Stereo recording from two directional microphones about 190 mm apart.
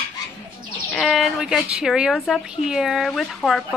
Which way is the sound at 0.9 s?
Centre (ahead or behind).